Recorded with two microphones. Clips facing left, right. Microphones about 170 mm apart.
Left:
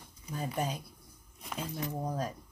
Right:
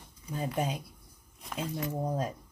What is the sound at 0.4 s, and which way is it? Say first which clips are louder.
Speech: right 2 dB; 10° right (ahead or behind).